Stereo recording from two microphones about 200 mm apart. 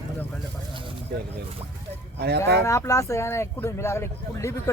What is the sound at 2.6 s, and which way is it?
Speech, 15° left (ahead or behind).